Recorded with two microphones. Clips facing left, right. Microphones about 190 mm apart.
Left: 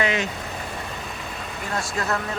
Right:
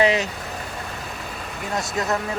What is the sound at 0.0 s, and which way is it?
Speech, 35° right (ahead or behind).